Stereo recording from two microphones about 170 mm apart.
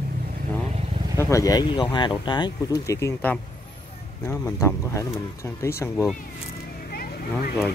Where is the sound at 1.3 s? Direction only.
20° left (ahead or behind).